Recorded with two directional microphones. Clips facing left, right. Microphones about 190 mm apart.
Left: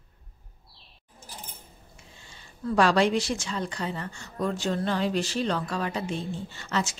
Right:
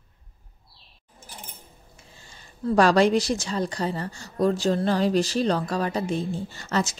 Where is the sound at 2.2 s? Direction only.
40° right (ahead or behind).